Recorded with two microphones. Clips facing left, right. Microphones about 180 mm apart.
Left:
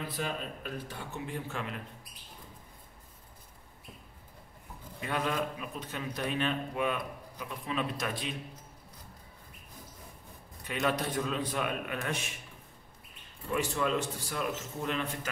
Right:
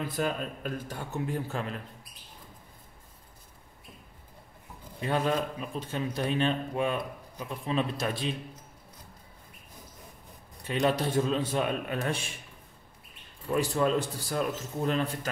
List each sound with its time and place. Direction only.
0.1 s speech: 45° right (ahead or behind)
5.0 s a man's voice: 30° right (ahead or behind)
10.6 s a man's voice: 30° right (ahead or behind)
13.6 s a man's voice: 35° right (ahead or behind)